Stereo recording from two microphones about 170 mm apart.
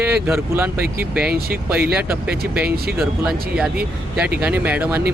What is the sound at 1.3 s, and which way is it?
Speech, 60° right (ahead or behind).